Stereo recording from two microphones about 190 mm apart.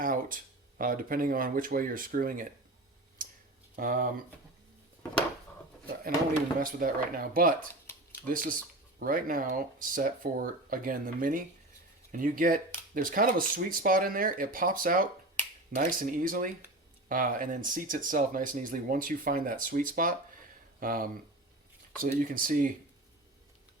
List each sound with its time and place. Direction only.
0.0 s a sound: 45° right (ahead or behind)
0.8 s speech: 45° right (ahead or behind)
3.2 s a sound: 45° right (ahead or behind)
3.8 s speech: 45° right (ahead or behind)
6.6 s speech: 50° right (ahead or behind)
22.2 s speech: 45° right (ahead or behind)